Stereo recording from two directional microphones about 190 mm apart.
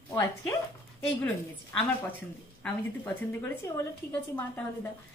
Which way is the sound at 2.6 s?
10° left (ahead or behind).